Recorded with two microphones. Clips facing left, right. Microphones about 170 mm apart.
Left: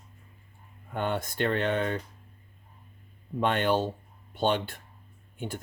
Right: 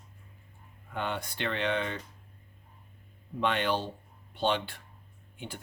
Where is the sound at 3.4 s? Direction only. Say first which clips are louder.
Left 4 dB; 45° left (ahead or behind).